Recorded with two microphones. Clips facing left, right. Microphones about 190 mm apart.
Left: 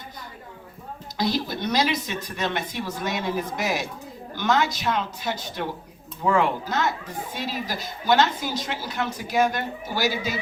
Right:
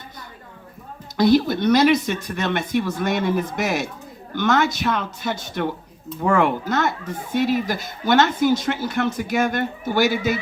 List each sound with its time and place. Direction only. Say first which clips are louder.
1.1 s speech: right 10 dB; 60° right (ahead or behind)